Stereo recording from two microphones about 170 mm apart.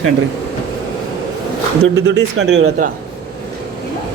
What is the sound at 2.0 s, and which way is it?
Speech, 85° right.